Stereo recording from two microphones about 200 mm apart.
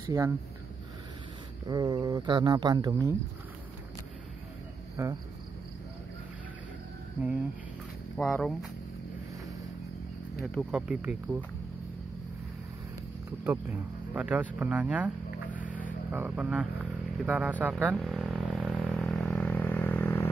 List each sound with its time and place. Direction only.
0.0 s speech: 15° right (ahead or behind)
1.7 s speech: 20° right (ahead or behind)
5.0 s speech: 15° right (ahead or behind)
7.2 s speech: 5° right (ahead or behind)
8.2 s speech: 5° left (ahead or behind)
10.4 s speech: 5° left (ahead or behind)
14.1 s speech: 5° right (ahead or behind)
15.5 s vehicle: 10° right (ahead or behind)
17.2 s speech: 5° right (ahead or behind)
17.9 s vehicle: centre (ahead or behind)